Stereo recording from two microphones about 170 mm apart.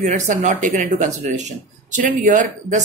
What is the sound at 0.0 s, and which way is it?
Speech, 40° right (ahead or behind).